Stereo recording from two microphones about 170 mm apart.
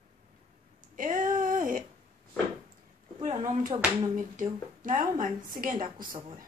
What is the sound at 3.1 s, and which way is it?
Speech, 25° right (ahead or behind).